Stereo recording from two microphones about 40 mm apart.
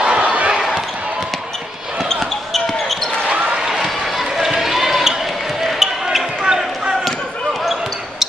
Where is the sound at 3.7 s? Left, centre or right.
Centre.